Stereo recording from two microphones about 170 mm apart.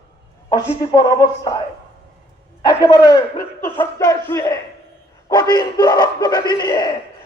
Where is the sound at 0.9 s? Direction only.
25° left (ahead or behind).